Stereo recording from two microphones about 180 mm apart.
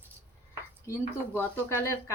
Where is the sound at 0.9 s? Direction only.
15° left (ahead or behind).